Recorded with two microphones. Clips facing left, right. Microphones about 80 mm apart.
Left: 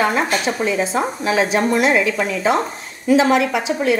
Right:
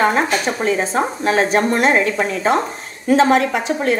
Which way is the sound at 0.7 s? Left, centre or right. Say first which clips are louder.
Right 4 dB; right.